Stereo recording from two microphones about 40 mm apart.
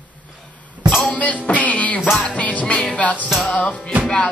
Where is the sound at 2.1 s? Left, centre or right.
Left.